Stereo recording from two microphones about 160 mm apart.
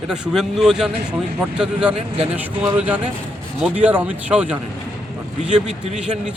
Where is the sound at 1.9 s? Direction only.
40° right (ahead or behind).